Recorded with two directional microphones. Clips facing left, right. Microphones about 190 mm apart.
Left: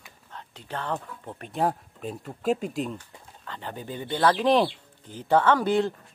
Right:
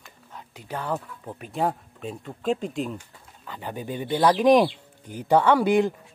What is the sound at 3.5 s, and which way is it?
Speech, 10° right (ahead or behind).